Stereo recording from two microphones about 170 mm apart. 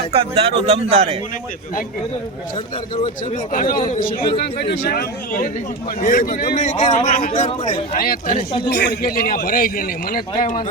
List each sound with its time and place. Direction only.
0.1 s speech: 35° right (ahead or behind)
3.5 s a man's voice: 50° left (ahead or behind)
4.3 s a man's voice: 70° left (ahead or behind)
6.0 s a man's voice: 50° left (ahead or behind)
6.6 s speech: 35° left (ahead or behind)
7.1 s a man's voice: 50° left (ahead or behind)
8.7 s a man's voice: 65° left (ahead or behind)